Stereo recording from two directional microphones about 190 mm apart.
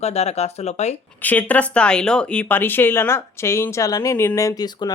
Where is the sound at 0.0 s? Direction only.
35° left (ahead or behind).